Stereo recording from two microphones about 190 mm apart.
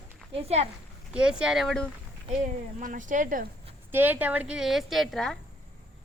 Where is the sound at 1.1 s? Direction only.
5° right (ahead or behind).